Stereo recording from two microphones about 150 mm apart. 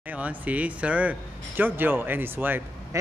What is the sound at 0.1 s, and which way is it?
Speech, 10° right (ahead or behind).